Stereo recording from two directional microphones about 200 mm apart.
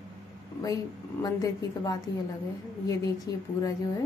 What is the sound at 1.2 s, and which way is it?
A woman's voice, 20° left (ahead or behind).